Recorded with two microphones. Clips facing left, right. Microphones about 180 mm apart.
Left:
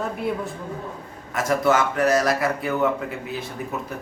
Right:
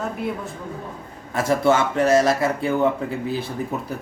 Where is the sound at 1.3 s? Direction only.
30° right (ahead or behind).